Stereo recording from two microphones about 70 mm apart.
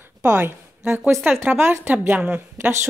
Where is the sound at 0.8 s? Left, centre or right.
Centre.